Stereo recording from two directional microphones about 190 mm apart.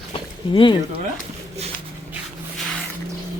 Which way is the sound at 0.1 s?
25° left (ahead or behind).